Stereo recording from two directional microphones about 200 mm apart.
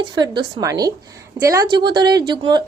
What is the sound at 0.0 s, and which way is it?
A woman's voice, 20° right (ahead or behind).